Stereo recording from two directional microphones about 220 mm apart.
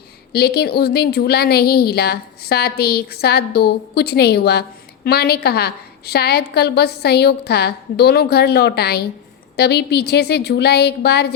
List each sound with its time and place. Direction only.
0.3 s a woman's voice: 45° left (ahead or behind)